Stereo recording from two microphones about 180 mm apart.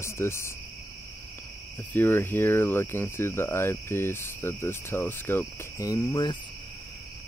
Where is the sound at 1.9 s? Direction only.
10° left (ahead or behind).